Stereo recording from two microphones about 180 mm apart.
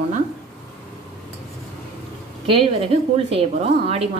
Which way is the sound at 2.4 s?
30° right (ahead or behind).